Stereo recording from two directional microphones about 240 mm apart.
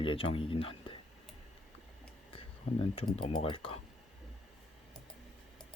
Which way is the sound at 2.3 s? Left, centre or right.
Left.